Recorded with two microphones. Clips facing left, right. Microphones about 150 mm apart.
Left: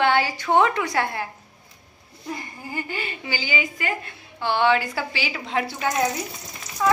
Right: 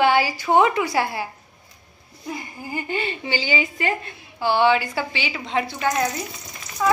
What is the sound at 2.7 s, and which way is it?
A woman's voice, 25° right (ahead or behind).